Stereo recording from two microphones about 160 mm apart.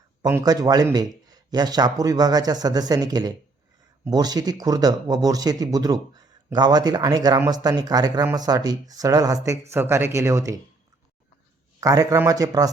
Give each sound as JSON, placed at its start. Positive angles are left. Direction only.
{"t": 0.3, "sound": "speech", "side_deg": -20}
{"t": 11.8, "sound": "speech", "side_deg": -20}